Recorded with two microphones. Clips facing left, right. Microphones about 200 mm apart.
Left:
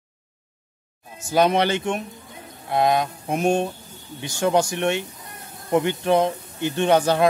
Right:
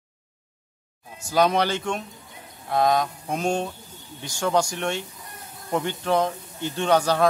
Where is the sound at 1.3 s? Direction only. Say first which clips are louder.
Left 2 dB; 20° left (ahead or behind).